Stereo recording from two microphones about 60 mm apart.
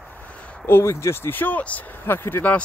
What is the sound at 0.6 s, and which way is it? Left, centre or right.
Speech, left.